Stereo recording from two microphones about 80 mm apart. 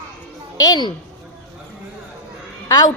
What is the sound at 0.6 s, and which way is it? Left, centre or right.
Speech, left.